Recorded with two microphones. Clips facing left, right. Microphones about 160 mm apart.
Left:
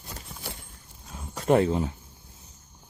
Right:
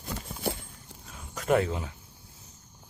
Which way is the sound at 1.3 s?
30° left (ahead or behind).